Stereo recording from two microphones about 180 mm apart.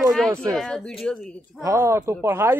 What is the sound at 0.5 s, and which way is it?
Speech, 5° left (ahead or behind).